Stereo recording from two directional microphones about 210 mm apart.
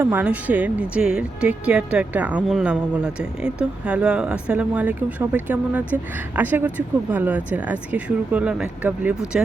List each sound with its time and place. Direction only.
0.0 s speech: 10° right (ahead or behind)